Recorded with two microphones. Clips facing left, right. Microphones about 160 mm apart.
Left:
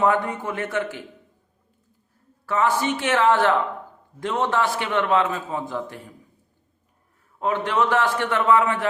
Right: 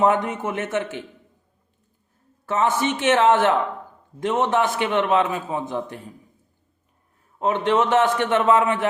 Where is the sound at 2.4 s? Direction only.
20° right (ahead or behind).